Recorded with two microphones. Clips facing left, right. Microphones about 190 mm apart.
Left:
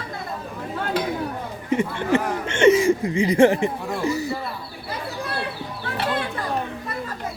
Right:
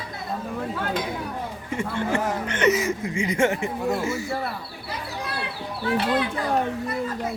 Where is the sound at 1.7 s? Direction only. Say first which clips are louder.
Left 5 dB; 20° left (ahead or behind); by 4.3 s 35° left (ahead or behind).